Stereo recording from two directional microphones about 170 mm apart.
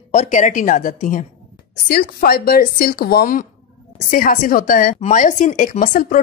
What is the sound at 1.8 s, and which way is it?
Speech, 60° left (ahead or behind).